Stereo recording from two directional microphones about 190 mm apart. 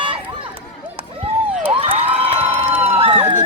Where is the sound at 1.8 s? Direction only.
30° right (ahead or behind).